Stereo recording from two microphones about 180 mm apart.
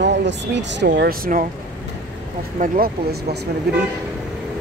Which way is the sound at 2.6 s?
55° right (ahead or behind).